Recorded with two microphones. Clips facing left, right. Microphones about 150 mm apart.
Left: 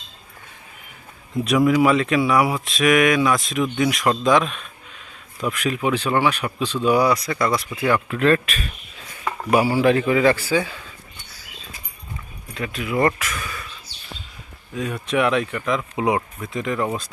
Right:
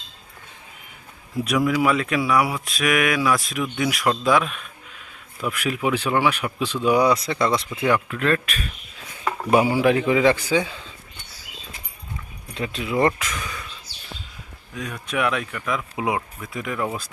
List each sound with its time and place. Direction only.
1.5 s a man's voice: centre (ahead or behind); by 7.6 s 25° right (ahead or behind)
8.0 s speech: 5° left (ahead or behind)
9.5 s a man's voice: 20° right (ahead or behind)
12.5 s speech: 25° right (ahead or behind)
14.8 s speech: centre (ahead or behind)